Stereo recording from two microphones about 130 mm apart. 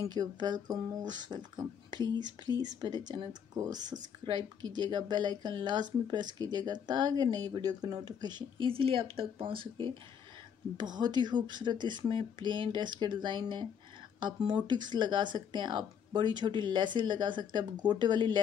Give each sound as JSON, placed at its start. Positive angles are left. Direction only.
{"t": 0.0, "sound": "speech", "side_deg": -30}
{"t": 10.8, "sound": "speech", "side_deg": -35}